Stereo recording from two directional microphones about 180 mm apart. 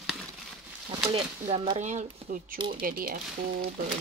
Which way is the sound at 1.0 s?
30° right (ahead or behind).